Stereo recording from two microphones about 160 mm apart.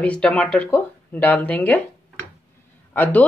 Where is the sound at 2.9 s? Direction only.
10° left (ahead or behind).